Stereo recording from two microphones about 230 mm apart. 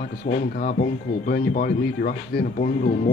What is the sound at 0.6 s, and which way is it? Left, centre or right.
Speech, left.